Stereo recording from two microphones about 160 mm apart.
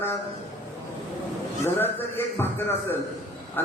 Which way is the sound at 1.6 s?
15° left (ahead or behind).